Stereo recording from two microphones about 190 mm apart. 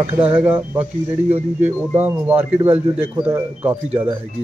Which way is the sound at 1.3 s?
35° right (ahead or behind).